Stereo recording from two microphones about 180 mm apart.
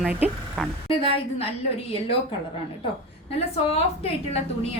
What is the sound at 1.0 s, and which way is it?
Speech, 30° left (ahead or behind).